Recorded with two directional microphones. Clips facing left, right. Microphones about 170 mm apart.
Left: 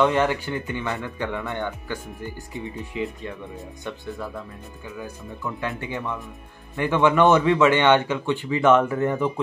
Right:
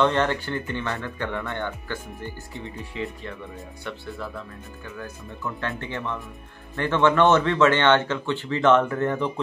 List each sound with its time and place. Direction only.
0.0 s speech: 10° left (ahead or behind)